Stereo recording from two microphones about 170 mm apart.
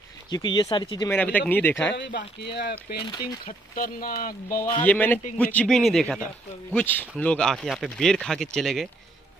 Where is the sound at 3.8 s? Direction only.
55° left (ahead or behind).